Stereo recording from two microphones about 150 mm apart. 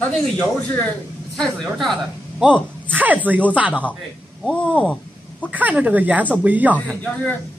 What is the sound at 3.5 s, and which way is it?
Speech, 10° right (ahead or behind).